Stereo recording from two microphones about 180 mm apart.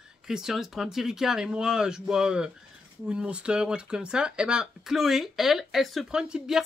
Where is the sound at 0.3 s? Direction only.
5° right (ahead or behind).